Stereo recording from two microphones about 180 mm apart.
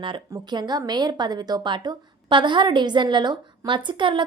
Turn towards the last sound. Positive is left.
turn(degrees=-25)  # may be behind; listen again after turning